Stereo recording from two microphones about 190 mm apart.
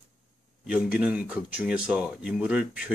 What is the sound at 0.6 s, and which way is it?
Speech, 5° right (ahead or behind).